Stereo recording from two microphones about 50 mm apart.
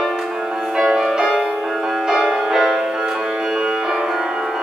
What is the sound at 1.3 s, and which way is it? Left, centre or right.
Music, centre.